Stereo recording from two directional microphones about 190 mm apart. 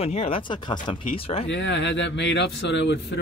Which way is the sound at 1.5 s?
65° left (ahead or behind).